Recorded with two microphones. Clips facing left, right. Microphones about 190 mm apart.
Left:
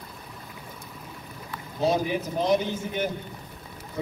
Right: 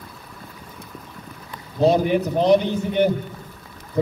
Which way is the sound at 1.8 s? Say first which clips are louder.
Right 7 dB; 60° right (ahead or behind).